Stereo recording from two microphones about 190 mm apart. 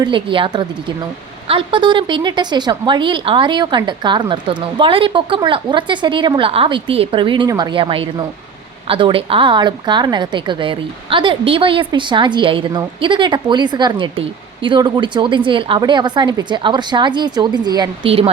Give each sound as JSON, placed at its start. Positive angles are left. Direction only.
{"t": 0.0, "sound": "a woman's voice", "side_deg": -25}